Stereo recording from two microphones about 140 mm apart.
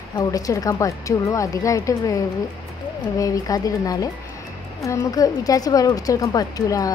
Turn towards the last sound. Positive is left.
turn(degrees=25)  # may be behind; listen again after turning